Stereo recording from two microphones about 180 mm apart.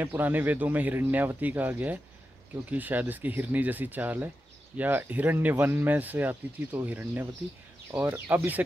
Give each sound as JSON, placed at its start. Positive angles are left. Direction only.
{"t": 0.0, "sound": "speech", "side_deg": -10}